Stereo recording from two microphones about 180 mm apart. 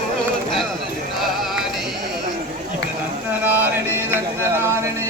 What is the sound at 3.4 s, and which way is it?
Music, 10° right (ahead or behind).